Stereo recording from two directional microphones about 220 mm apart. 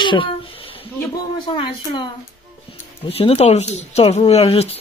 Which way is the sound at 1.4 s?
20° left (ahead or behind).